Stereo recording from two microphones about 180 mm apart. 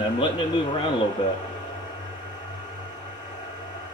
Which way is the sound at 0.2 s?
25° left (ahead or behind).